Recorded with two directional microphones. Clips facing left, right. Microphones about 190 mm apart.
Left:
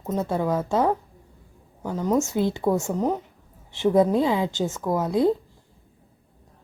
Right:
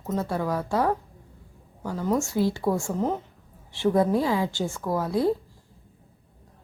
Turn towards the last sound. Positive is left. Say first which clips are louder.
# left 3 dB
turn(degrees=20)  # may be behind; listen again after turning